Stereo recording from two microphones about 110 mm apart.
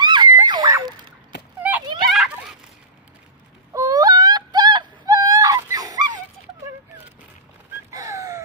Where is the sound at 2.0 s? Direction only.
Centre (ahead or behind).